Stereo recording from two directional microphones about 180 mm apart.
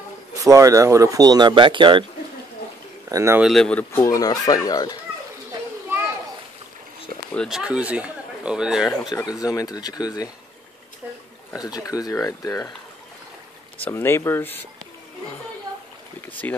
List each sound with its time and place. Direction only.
0.3 s speech: 20° right (ahead or behind)
3.1 s speech: 20° right (ahead or behind)
3.3 s speech: centre (ahead or behind); by 4.9 s 20° left (ahead or behind)
5.5 s children playing: 15° right (ahead or behind)
7.3 s speech: centre (ahead or behind)
9.1 s speech: 20° left (ahead or behind)
11.5 s speech: 20° left (ahead or behind)
13.8 s speech: 10° left (ahead or behind)
16.2 s speech: 10° left (ahead or behind)